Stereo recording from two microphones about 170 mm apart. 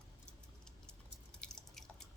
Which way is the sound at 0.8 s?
5° left (ahead or behind).